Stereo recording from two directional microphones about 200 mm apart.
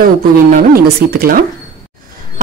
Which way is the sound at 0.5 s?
50° right (ahead or behind).